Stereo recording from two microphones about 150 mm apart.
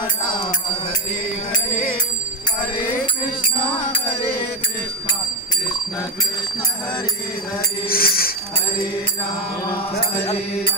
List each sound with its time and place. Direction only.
7.9 s tambourine: 85° left